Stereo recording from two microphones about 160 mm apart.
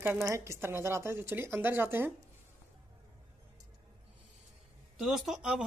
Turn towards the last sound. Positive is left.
turn(degrees=-5)  # may be behind; listen again after turning